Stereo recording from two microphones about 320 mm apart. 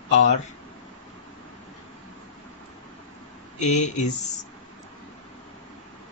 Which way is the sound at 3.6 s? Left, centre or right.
Left.